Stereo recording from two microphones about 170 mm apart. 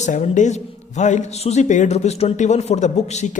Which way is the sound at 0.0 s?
45° left (ahead or behind).